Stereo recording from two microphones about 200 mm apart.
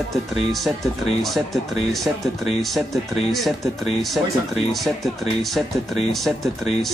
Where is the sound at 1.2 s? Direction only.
Centre (ahead or behind).